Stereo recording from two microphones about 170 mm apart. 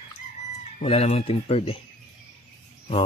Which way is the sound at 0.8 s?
40° left (ahead or behind).